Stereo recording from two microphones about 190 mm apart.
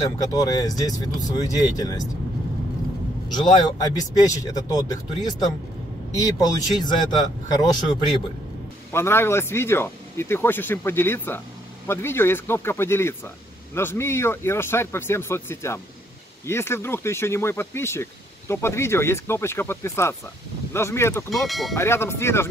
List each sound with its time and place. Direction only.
0.2 s speech: 20° left (ahead or behind)
3.3 s speech: 25° left (ahead or behind)
6.8 s speech: 20° left (ahead or behind)
21.3 s speech: centre (ahead or behind)
21.7 s speech: 15° left (ahead or behind)